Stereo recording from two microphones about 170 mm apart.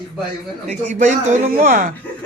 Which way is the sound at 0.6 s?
5° left (ahead or behind).